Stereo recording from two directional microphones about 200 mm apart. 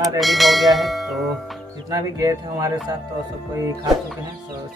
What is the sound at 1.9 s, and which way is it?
Speech, 20° right (ahead or behind).